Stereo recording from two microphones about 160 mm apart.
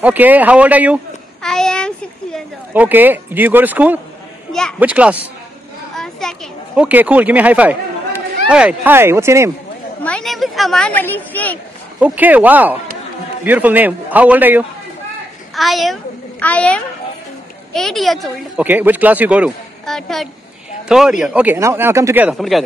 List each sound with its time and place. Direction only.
0.0 s speech: 10° right (ahead or behind)
1.4 s a sound: 5° left (ahead or behind)
2.7 s speech: 10° right (ahead or behind)
4.5 s speech: 5° left (ahead or behind)
4.7 s speech: 10° right (ahead or behind)
6.2 s a child's voice: 5° left (ahead or behind)
6.8 s speech: 10° right (ahead or behind)
10.0 s speech: 5° left (ahead or behind)
12.0 s a child's voice: 10° right (ahead or behind)
18.6 s speech: 10° right (ahead or behind)
19.9 s speech: 5° left (ahead or behind); by 22.3 s 15° right (ahead or behind)
22.3 s speech: centre (ahead or behind)